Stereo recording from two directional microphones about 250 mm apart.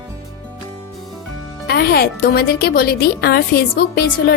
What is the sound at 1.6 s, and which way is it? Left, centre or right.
A woman's voice, left.